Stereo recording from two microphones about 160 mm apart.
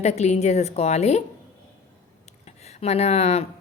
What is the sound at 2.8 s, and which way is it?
Speech, 45° left (ahead or behind).